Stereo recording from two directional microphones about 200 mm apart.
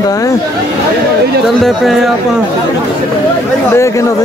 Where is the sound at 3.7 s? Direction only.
15° left (ahead or behind).